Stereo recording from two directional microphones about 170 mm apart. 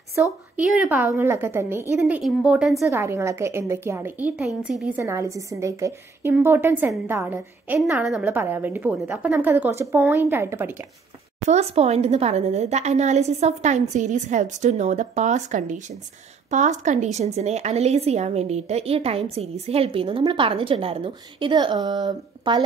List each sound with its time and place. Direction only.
0.2 s a woman's voice: 10° right (ahead or behind)
2.9 s a woman's voice: 15° right (ahead or behind)
11.4 s a woman's voice: 40° right (ahead or behind)